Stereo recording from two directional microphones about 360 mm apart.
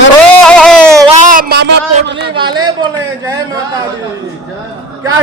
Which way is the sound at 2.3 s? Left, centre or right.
Centre.